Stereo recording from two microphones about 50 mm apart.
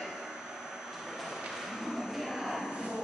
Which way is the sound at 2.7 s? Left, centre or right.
Centre.